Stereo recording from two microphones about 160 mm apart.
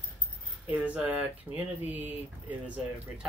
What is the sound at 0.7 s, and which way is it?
Speech, 10° right (ahead or behind).